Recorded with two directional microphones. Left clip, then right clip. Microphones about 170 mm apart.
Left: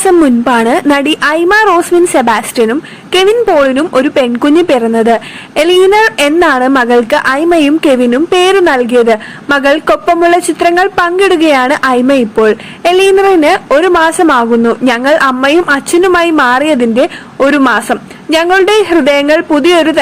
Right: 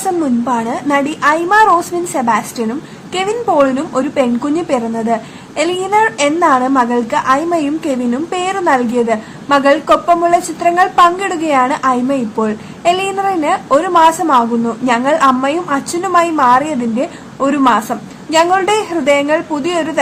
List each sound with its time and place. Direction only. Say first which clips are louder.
0.4 s a woman's voice: left 8 dB; 45° left (ahead or behind)